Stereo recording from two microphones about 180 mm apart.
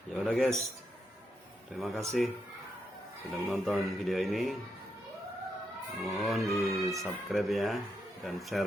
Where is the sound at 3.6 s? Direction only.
Centre (ahead or behind).